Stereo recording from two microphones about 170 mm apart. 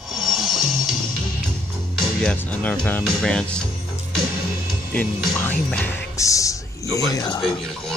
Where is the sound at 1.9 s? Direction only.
5° left (ahead or behind).